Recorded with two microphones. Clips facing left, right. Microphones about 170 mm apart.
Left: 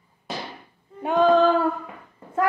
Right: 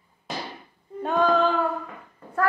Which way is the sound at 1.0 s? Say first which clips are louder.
Left 2 dB; 15° left (ahead or behind).